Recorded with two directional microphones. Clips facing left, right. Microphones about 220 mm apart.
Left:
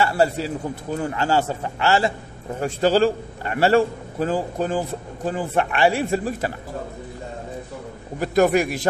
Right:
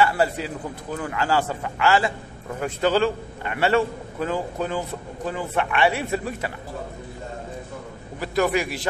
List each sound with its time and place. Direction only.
0.0 s a man's voice: 30° left (ahead or behind)
8.2 s a man's voice: 45° left (ahead or behind)